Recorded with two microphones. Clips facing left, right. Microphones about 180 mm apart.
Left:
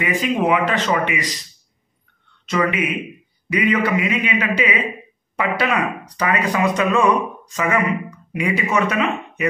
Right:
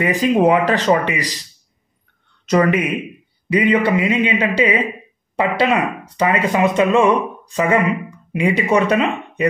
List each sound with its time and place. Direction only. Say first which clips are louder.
0.0 s speech: right 5 dB; 35° right (ahead or behind)
2.4 s speech: right 5 dB; 40° right (ahead or behind)
3.4 s speech: right 3 dB; 30° right (ahead or behind)